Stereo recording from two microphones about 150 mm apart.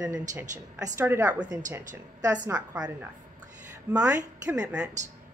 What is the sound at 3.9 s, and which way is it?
Speech, 25° right (ahead or behind).